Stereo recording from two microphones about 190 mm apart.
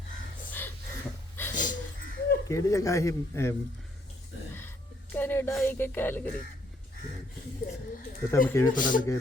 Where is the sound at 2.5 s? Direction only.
15° left (ahead or behind).